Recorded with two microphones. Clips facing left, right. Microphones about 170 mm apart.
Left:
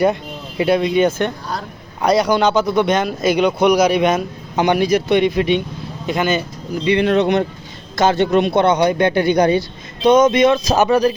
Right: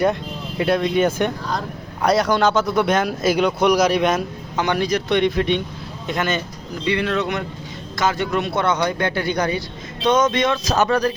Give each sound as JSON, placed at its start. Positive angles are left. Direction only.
{"t": 0.0, "sound": "speech", "side_deg": 5}
{"t": 1.5, "sound": "a man's voice", "side_deg": 5}
{"t": 4.5, "sound": "a man's voice", "side_deg": 15}
{"t": 6.8, "sound": "a man's voice", "side_deg": 20}
{"t": 10.0, "sound": "speech", "side_deg": 10}